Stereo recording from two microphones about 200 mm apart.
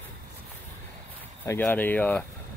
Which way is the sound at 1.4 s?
10° left (ahead or behind).